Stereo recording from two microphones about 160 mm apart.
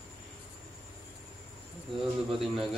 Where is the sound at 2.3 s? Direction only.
Centre (ahead or behind).